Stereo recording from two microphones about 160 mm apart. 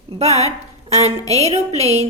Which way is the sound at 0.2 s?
45° right (ahead or behind).